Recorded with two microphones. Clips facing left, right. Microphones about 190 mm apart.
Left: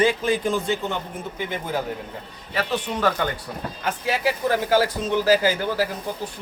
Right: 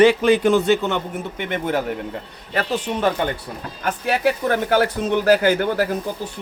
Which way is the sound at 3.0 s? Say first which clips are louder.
Right 2 dB; 25° right (ahead or behind).